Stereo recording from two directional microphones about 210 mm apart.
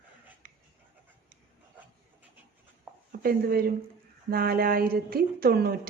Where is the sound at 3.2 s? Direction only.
45° right (ahead or behind).